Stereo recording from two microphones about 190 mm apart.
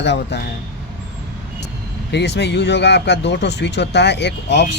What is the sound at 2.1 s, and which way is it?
Speech, 65° left (ahead or behind).